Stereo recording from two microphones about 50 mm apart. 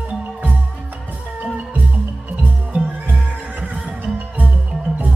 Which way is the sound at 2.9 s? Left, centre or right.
Right.